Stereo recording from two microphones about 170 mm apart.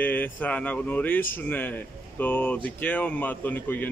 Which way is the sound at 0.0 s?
10° left (ahead or behind).